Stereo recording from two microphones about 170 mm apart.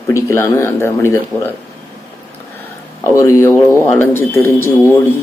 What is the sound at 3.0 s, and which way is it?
Speech, 15° left (ahead or behind).